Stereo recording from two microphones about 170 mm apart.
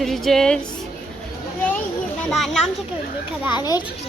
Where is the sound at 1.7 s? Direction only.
10° left (ahead or behind).